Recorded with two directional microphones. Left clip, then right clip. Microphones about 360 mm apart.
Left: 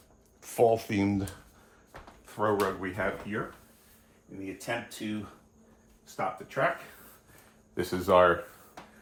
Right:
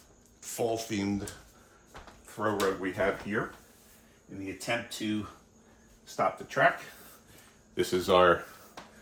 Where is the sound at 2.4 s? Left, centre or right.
Centre.